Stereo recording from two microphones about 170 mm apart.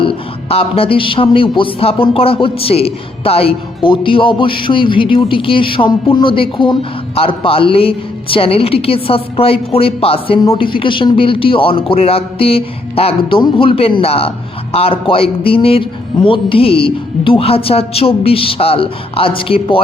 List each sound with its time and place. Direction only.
0.0 s a man's voice: 35° left (ahead or behind)